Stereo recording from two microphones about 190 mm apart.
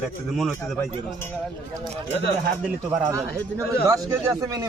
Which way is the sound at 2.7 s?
15° right (ahead or behind).